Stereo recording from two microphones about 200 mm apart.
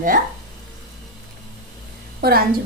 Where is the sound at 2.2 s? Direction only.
50° right (ahead or behind).